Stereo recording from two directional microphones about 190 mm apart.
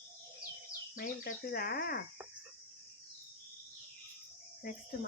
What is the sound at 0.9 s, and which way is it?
Speech, 50° left (ahead or behind).